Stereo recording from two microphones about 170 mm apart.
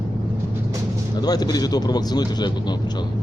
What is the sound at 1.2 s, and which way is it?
Speech, 25° left (ahead or behind).